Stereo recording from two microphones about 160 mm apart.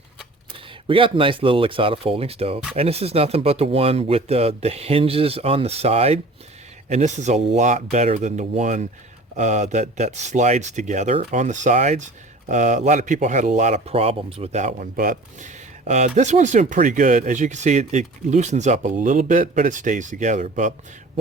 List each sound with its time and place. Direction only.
0.5 s speech: 35° right (ahead or behind); by 20.7 s 50° right (ahead or behind)